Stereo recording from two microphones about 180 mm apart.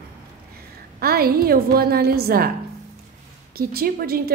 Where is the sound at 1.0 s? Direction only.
55° right (ahead or behind).